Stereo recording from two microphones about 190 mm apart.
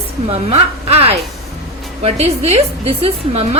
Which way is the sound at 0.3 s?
35° right (ahead or behind).